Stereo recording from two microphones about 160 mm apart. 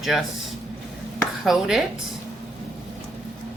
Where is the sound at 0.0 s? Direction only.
Centre (ahead or behind).